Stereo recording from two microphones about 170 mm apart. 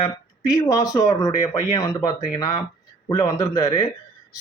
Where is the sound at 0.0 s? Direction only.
20° left (ahead or behind).